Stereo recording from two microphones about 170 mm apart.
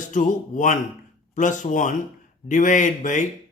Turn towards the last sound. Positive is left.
turn(degrees=45)  # may be behind; listen again after turning